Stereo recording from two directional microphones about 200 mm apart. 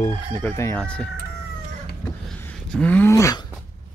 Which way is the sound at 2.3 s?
5° left (ahead or behind).